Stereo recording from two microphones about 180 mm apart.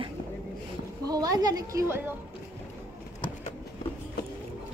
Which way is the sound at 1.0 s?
20° right (ahead or behind).